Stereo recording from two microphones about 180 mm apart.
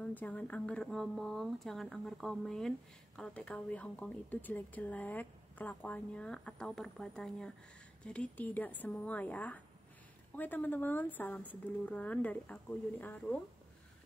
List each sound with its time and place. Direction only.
0.0 s a woman's voice: 10° left (ahead or behind)